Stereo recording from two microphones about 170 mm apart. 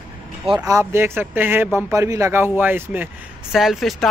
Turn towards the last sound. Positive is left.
turn(degrees=0)  # may be behind; listen again after turning